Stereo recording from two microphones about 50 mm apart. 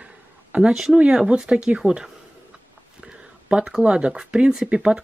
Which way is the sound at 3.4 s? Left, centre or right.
Centre.